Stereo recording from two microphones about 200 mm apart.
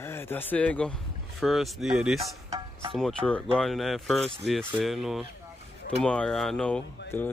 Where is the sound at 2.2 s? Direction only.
15° right (ahead or behind).